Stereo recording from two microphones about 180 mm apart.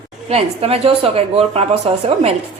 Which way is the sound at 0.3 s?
35° right (ahead or behind).